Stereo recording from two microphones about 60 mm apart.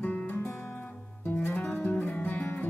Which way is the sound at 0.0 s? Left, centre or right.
Left.